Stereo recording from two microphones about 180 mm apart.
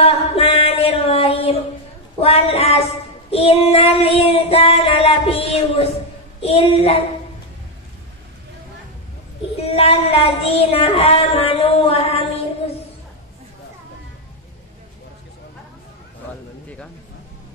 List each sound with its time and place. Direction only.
0.0 s mantra: 35° left (ahead or behind)
2.1 s child singing: 35° left (ahead or behind)
9.6 s child singing: 35° left (ahead or behind)